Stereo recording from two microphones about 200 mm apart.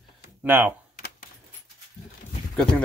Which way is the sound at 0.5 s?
10° right (ahead or behind).